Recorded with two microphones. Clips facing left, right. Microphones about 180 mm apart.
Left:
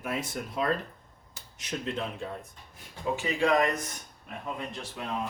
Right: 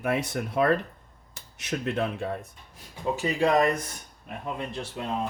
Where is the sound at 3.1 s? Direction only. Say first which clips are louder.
Right 2 dB; 40° right (ahead or behind).